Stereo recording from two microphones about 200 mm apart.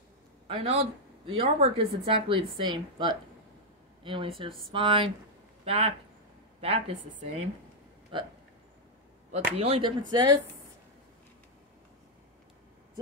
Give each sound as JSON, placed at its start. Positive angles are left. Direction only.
{"t": 0.5, "sound": "speech", "side_deg": -30}
{"t": 4.5, "sound": "speech", "side_deg": 0}
{"t": 4.7, "sound": "a woman's voice", "side_deg": -25}
{"t": 9.3, "sound": "speech", "side_deg": -30}